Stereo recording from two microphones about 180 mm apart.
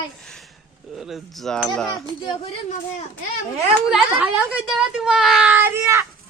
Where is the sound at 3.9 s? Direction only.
5° right (ahead or behind).